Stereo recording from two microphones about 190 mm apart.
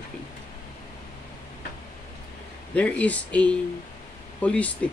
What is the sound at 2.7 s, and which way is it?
Speech, 5° left (ahead or behind).